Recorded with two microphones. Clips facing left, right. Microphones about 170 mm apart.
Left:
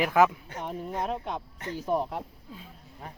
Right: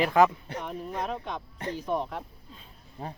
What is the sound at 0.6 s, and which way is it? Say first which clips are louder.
Speech: left 2 dB; 25° left (ahead or behind).